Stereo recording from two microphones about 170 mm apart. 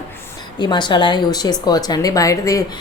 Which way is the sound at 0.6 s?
25° left (ahead or behind).